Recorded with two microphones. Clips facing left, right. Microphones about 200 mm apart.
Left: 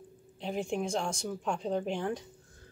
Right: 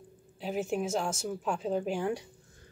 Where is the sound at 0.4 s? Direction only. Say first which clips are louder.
Right 1 dB; 5° right (ahead or behind).